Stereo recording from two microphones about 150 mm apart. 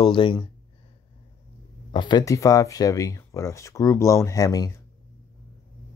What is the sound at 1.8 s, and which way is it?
Speech, 30° left (ahead or behind).